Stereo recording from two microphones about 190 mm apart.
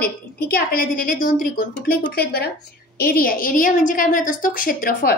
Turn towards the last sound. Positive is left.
turn(degrees=50)  # may be behind; listen again after turning